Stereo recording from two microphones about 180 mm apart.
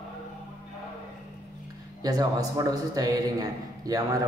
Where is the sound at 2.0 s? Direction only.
20° right (ahead or behind).